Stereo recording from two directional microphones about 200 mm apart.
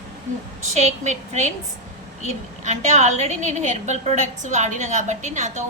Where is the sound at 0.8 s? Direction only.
35° right (ahead or behind).